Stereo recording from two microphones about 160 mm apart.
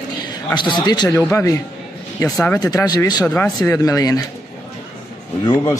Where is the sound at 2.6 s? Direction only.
25° left (ahead or behind).